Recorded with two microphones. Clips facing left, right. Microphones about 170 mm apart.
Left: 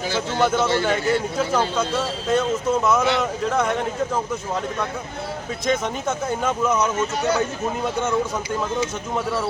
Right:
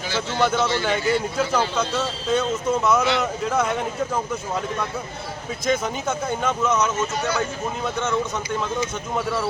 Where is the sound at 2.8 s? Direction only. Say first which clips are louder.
Left 1 dB; centre (ahead or behind).